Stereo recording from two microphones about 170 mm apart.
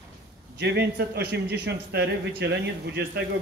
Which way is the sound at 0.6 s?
75° right (ahead or behind).